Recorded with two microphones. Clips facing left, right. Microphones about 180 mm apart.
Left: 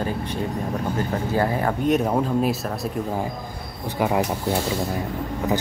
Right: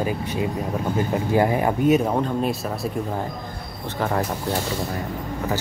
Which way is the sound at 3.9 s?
10° left (ahead or behind).